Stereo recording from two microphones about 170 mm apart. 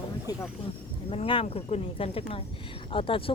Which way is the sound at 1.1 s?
30° left (ahead or behind).